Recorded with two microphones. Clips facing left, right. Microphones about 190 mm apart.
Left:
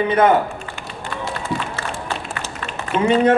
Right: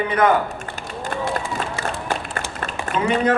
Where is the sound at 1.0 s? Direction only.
50° right (ahead or behind).